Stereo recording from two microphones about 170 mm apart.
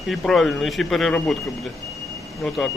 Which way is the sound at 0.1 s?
Centre (ahead or behind).